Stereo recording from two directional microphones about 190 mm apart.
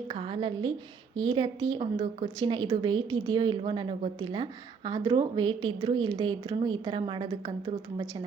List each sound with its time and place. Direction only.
0.1 s a woman's voice: 25° right (ahead or behind)